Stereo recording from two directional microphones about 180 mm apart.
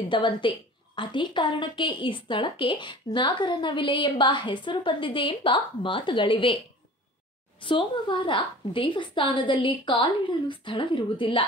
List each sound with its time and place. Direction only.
0.1 s a woman's voice: 25° left (ahead or behind)
7.6 s a woman's voice: 30° left (ahead or behind)